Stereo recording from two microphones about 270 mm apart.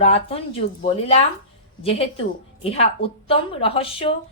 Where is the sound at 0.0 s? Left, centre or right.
Left.